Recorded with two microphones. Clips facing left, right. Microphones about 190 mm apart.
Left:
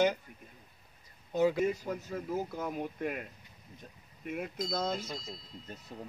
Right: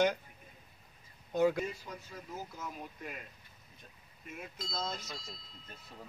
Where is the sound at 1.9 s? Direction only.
50° left (ahead or behind).